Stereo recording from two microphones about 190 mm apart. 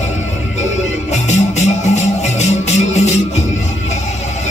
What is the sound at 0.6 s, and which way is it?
Music, 35° left (ahead or behind).